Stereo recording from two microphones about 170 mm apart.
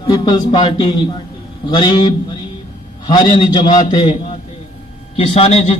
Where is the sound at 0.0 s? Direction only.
25° left (ahead or behind).